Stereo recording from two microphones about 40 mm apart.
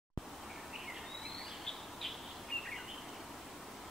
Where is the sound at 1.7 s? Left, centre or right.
Centre.